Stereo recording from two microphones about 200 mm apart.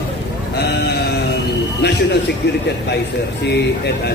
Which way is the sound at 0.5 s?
55° left (ahead or behind).